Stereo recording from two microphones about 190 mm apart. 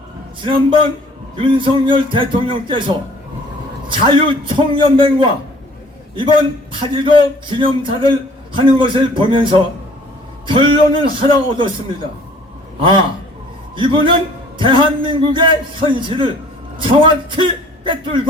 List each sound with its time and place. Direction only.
0.4 s a man's voice: 25° right (ahead or behind)
6.7 s a man's voice: 25° right (ahead or behind)
12.8 s a man's voice: 25° right (ahead or behind)